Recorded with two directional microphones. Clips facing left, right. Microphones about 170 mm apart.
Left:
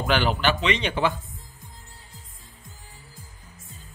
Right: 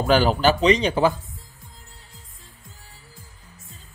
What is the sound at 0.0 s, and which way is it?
Speech, 40° right (ahead or behind).